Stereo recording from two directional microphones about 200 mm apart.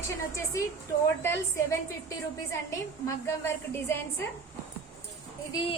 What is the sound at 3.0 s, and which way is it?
A woman's voice, 15° left (ahead or behind).